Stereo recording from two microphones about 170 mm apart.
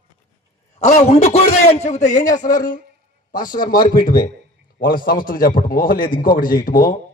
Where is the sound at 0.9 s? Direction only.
40° left (ahead or behind).